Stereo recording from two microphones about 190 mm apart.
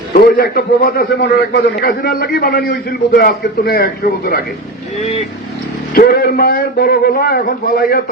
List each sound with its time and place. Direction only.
0.1 s a man's voice: 55° left (ahead or behind)
5.9 s a man's voice: 50° left (ahead or behind)